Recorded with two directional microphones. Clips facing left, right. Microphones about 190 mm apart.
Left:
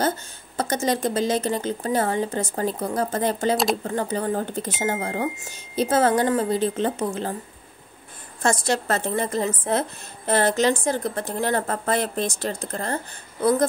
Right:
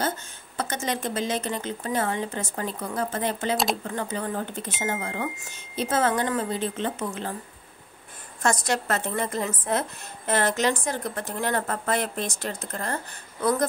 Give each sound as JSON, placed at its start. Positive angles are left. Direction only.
{"t": 0.6, "sound": "speech", "side_deg": 40}
{"t": 8.4, "sound": "speech", "side_deg": 30}